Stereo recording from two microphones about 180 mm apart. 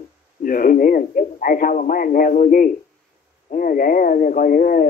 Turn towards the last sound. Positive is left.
turn(degrees=50)  # may be behind; listen again after turning